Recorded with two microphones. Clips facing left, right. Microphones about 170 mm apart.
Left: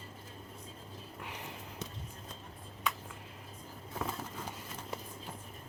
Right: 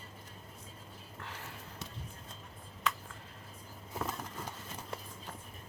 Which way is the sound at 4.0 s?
Centre (ahead or behind).